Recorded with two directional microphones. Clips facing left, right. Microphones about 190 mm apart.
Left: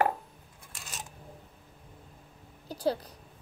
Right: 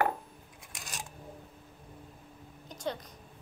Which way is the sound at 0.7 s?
15° right (ahead or behind).